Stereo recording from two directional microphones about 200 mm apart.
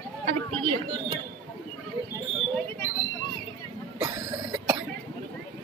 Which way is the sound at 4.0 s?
10° right (ahead or behind).